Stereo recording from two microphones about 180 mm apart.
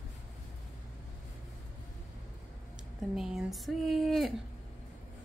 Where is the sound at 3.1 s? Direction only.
5° right (ahead or behind).